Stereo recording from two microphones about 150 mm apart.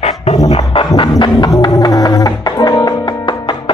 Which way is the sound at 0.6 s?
30° left (ahead or behind).